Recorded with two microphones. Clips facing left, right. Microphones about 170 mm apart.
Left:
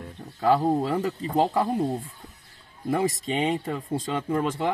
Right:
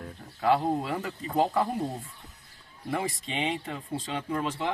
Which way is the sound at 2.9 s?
40° left (ahead or behind).